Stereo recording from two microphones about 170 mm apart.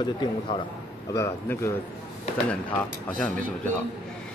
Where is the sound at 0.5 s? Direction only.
30° left (ahead or behind).